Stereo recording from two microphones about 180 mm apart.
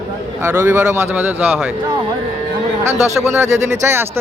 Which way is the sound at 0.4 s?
10° right (ahead or behind).